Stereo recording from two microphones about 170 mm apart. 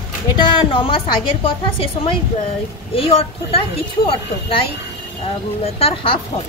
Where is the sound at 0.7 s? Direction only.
30° left (ahead or behind).